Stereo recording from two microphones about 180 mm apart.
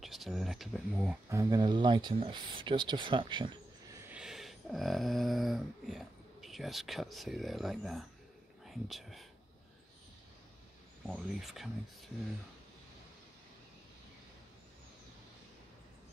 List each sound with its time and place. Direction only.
0.0 s speech: centre (ahead or behind)
1.3 s speech: 20° right (ahead or behind)
3.9 s a sound: 5° right (ahead or behind)
8.6 s speech: centre (ahead or behind)
11.1 s speech: 5° right (ahead or behind)